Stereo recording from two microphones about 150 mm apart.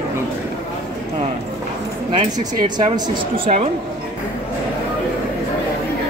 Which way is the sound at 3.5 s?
55° right (ahead or behind).